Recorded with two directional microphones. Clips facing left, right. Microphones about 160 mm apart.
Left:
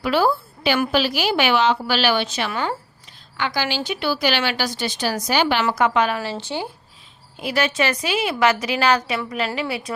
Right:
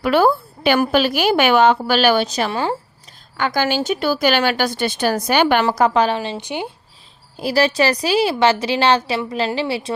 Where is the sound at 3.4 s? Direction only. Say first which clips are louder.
Right 5 dB; 45° right (ahead or behind).